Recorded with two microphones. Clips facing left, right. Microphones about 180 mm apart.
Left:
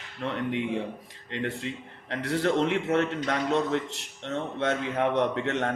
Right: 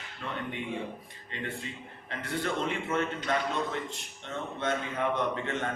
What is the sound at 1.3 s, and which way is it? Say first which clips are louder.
A man's voice: left 6 dB; 75° left (ahead or behind).